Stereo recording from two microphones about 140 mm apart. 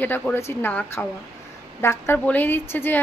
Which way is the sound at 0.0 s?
15° left (ahead or behind).